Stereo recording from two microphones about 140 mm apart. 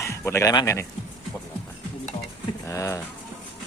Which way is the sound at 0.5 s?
20° left (ahead or behind).